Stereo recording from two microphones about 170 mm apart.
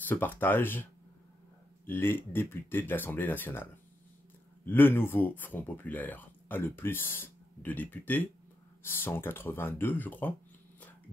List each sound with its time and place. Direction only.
0.0 s speech: 10° left (ahead or behind)
1.9 s speech: 15° left (ahead or behind)
4.6 s speech: 10° left (ahead or behind)